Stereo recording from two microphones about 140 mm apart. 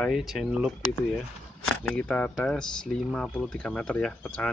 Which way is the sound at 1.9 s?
10° left (ahead or behind).